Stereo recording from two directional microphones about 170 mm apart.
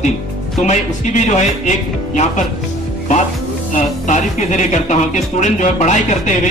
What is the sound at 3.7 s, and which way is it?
Speech, 45° left (ahead or behind).